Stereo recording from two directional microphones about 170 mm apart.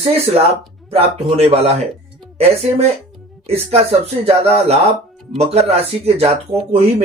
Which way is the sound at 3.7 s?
40° right (ahead or behind).